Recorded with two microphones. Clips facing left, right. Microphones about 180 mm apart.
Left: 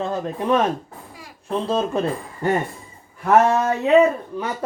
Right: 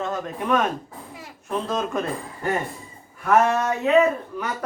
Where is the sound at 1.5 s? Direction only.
25° left (ahead or behind).